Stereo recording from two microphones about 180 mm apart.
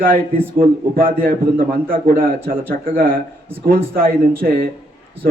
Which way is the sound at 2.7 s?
50° right (ahead or behind).